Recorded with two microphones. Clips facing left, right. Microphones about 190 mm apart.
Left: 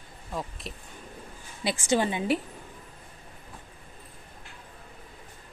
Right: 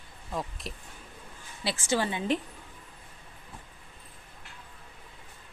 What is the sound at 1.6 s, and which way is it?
Speech, 15° left (ahead or behind).